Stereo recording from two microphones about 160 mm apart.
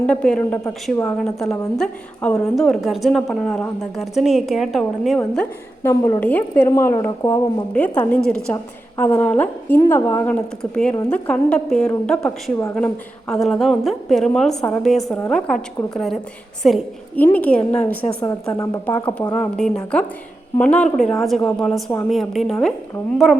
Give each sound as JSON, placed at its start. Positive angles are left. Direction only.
{"t": 0.0, "sound": "a woman's voice", "side_deg": 5}
{"t": 5.8, "sound": "a woman's voice", "side_deg": 15}
{"t": 10.6, "sound": "a woman's voice", "side_deg": 5}
{"t": 19.3, "sound": "a woman's voice", "side_deg": 5}